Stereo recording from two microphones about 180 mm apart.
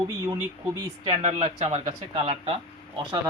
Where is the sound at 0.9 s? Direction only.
20° right (ahead or behind).